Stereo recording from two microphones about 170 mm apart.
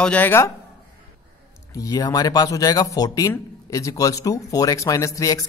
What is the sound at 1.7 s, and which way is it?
Speech, 20° left (ahead or behind).